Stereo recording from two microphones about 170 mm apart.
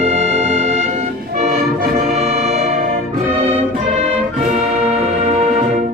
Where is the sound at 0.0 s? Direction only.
40° right (ahead or behind).